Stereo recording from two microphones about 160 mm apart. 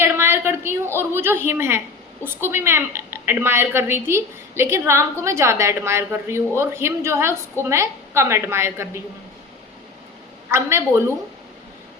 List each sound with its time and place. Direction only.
0.0 s a sound: 15° right (ahead or behind)
1.1 s a woman's voice: 15° right (ahead or behind)
10.5 s a woman's voice: 15° right (ahead or behind)